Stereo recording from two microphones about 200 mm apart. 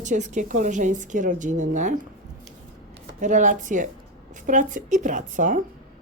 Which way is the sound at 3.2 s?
40° right (ahead or behind).